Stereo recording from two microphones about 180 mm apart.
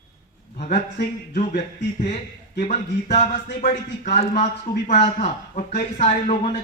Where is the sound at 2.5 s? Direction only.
40° left (ahead or behind).